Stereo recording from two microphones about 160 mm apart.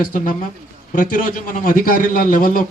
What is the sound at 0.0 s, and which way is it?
A man's voice, 60° left (ahead or behind).